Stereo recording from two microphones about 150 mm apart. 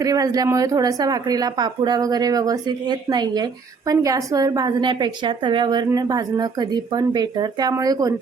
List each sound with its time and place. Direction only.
0.0 s speech: 25° right (ahead or behind)